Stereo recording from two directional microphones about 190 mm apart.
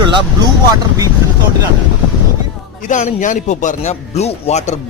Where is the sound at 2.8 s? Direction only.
40° left (ahead or behind).